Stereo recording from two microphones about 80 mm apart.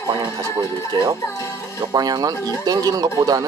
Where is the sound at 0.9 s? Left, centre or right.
Right.